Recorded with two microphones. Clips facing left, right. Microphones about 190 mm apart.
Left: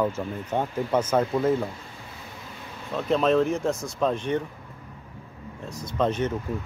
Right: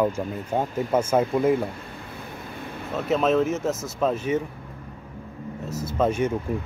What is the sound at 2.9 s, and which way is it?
Speech, 5° right (ahead or behind).